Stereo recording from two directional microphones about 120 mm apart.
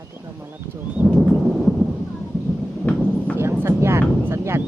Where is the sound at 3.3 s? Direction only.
25° right (ahead or behind).